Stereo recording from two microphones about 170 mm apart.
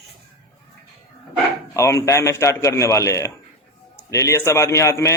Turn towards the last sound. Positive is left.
turn(degrees=15)  # may be behind; listen again after turning